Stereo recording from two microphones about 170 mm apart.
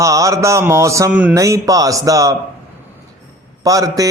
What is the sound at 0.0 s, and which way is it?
Mantra, 20° right (ahead or behind).